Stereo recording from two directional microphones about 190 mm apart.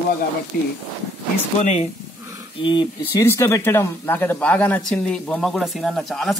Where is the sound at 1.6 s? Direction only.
40° left (ahead or behind).